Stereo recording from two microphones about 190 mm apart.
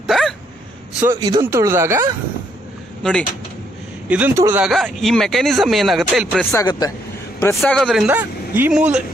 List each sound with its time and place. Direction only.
0.0 s dog: centre (ahead or behind)
1.2 s speech: 20° right (ahead or behind)
3.0 s speech: 5° left (ahead or behind)
4.1 s speech: 10° right (ahead or behind)
4.6 s speech: centre (ahead or behind)
6.5 s a man's voice: 20° left (ahead or behind)
7.7 s speech: centre (ahead or behind)